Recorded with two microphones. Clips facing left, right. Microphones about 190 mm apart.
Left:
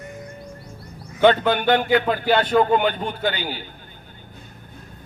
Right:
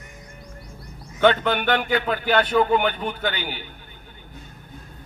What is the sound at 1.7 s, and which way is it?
A man's voice, 35° left (ahead or behind).